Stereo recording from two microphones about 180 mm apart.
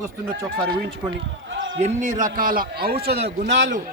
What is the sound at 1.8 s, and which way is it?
A man's voice, 45° right (ahead or behind).